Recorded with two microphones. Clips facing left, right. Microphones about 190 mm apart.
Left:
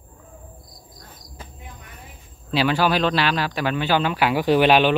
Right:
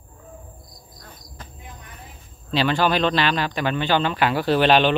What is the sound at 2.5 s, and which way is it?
Speech, 10° left (ahead or behind).